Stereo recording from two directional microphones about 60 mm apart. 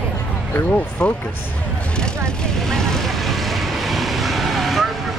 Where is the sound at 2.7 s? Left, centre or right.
Centre.